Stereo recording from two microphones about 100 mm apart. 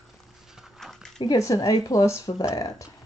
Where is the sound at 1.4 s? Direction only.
35° left (ahead or behind).